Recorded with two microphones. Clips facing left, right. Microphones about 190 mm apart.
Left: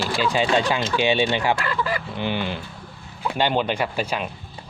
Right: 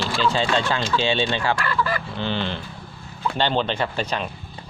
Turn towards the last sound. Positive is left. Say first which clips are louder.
# even
turn(degrees=10)  # may be behind; listen again after turning